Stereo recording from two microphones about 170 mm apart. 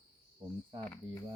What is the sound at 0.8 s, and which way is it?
Cricket, 10° left (ahead or behind).